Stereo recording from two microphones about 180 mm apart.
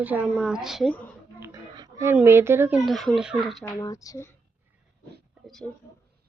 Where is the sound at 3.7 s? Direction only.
20° left (ahead or behind).